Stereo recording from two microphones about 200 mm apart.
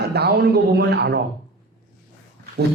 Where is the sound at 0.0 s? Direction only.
55° right (ahead or behind).